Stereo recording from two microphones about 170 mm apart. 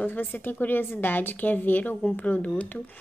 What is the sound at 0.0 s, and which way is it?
Speech, 10° left (ahead or behind).